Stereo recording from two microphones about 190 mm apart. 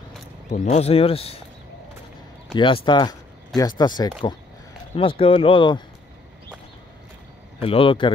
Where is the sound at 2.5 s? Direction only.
25° left (ahead or behind).